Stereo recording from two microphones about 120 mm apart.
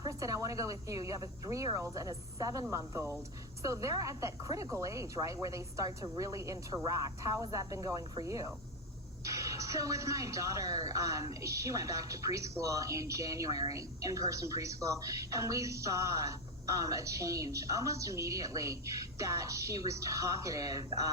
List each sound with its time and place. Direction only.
0.0 s a woman's voice: 25° right (ahead or behind)